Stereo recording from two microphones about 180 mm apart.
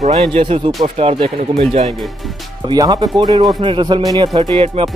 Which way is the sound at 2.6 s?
25° right (ahead or behind).